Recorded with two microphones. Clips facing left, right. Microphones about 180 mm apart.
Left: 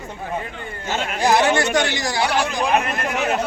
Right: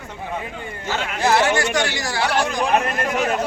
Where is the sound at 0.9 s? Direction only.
15° left (ahead or behind).